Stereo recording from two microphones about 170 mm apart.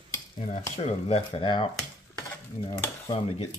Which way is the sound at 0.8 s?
35° left (ahead or behind).